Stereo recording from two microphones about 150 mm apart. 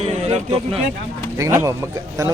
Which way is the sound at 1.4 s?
20° right (ahead or behind).